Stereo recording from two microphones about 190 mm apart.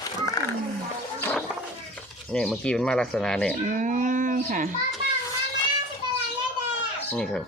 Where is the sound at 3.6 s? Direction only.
40° right (ahead or behind).